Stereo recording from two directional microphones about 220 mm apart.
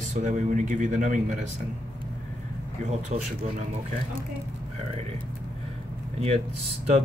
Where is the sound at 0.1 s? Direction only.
35° right (ahead or behind).